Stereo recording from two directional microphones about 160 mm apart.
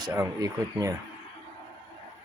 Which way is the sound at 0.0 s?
20° right (ahead or behind).